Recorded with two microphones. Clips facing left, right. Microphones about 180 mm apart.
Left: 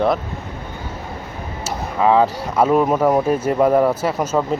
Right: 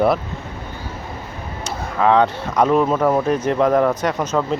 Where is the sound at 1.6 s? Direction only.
5° left (ahead or behind).